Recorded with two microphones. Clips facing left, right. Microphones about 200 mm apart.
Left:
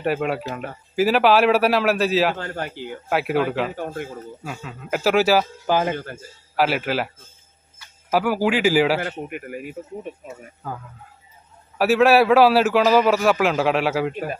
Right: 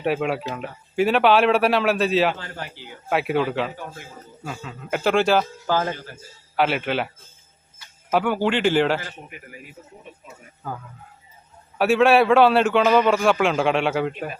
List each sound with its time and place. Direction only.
0.0 s a man's voice: centre (ahead or behind)
2.3 s speech: 50° left (ahead or behind)
3.1 s a man's voice: centre (ahead or behind)
3.7 s speech: 50° left (ahead or behind)
4.4 s a man's voice: 5° left (ahead or behind)
6.5 s a man's voice: centre (ahead or behind)
8.1 s a man's voice: 5° left (ahead or behind)
9.0 s a man's voice: 55° left (ahead or behind)
10.6 s a man's voice: centre (ahead or behind)
11.8 s a man's voice: centre (ahead or behind)